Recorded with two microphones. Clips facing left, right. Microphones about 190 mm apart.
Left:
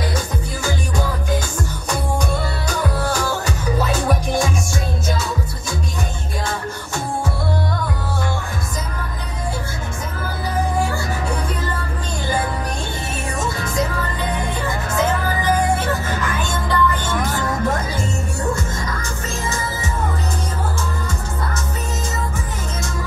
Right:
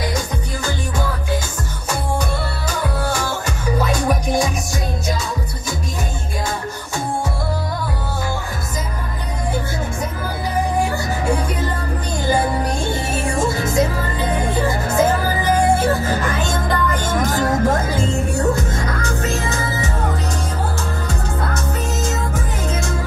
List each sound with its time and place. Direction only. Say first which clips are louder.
13.4 s music: right 4 dB; 25° right (ahead or behind)
14.9 s music: right 2 dB; 30° right (ahead or behind)
16.6 s music: even; 45° right (ahead or behind)
18.5 s music: right 3 dB; 60° right (ahead or behind)